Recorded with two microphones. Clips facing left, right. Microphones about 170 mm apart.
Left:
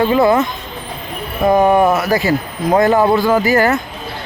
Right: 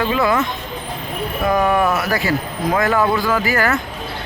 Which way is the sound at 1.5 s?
30° left (ahead or behind).